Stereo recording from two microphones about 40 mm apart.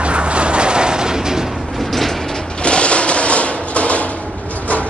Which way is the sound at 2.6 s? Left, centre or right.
Left.